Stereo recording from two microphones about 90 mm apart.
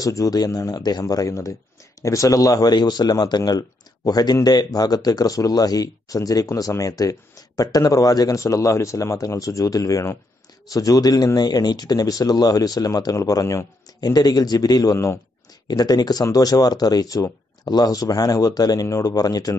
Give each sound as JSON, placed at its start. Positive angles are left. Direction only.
{"t": 0.0, "sound": "a man's voice", "side_deg": 40}